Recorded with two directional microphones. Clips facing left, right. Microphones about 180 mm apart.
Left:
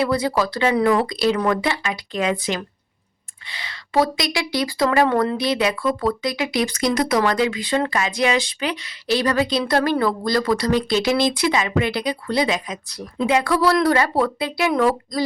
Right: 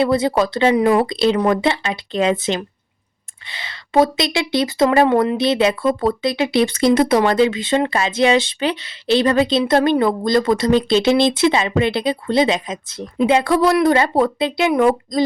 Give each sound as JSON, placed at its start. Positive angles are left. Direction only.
{"t": 0.0, "sound": "a woman's voice", "side_deg": -25}